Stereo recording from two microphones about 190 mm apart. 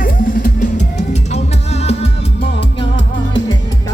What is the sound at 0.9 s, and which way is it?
Music, 35° left (ahead or behind).